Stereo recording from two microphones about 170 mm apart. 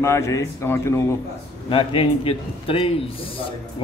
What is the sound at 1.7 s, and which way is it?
A man's voice, 35° left (ahead or behind).